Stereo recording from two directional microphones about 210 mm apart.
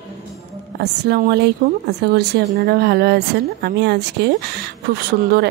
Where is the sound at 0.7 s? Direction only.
50° right (ahead or behind).